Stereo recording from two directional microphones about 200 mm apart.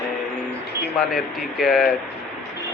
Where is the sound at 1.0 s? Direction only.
Centre (ahead or behind).